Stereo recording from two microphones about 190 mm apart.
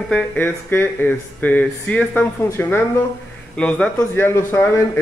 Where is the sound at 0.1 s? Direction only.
10° left (ahead or behind).